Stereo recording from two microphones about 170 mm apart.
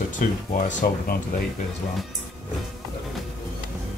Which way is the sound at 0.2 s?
50° left (ahead or behind).